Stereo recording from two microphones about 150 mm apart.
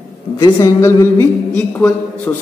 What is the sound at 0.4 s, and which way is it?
A man's voice, 20° left (ahead or behind).